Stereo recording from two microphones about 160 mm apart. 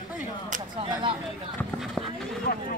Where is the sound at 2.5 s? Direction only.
65° left (ahead or behind).